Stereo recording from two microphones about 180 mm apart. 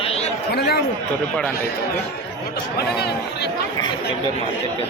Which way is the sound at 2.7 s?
65° left (ahead or behind).